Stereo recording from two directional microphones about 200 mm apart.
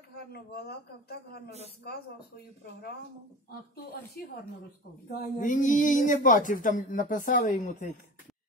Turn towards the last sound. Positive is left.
turn(degrees=35)  # may be behind; listen again after turning